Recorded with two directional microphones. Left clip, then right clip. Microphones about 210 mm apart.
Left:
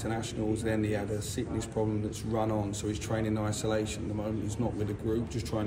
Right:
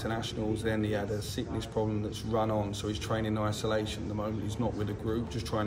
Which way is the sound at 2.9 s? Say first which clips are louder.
Even; 5° right (ahead or behind).